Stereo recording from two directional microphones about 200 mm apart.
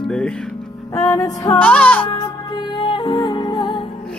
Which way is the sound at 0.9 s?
15° left (ahead or behind).